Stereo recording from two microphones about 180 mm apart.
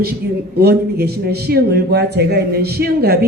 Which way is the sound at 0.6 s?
60° right (ahead or behind).